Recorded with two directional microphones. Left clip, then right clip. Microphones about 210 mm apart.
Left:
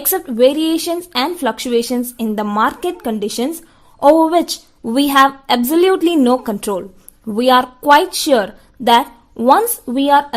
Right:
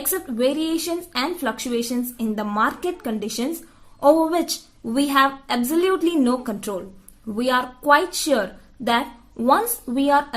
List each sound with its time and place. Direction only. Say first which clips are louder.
0.1 s a woman's voice: left 9 dB; 40° left (ahead or behind)